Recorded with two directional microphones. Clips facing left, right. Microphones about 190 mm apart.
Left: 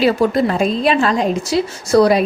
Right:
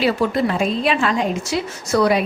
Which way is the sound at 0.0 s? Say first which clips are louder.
Left 4 dB; 40° left (ahead or behind).